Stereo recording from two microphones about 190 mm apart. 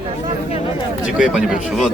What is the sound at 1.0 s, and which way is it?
Speech, 5° right (ahead or behind).